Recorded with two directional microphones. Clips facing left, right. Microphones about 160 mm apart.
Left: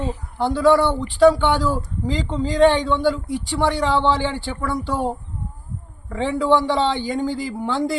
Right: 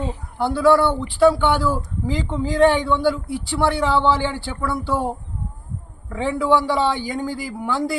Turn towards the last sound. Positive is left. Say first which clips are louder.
# left 1 dB
turn(degrees=20)  # may be behind; listen again after turning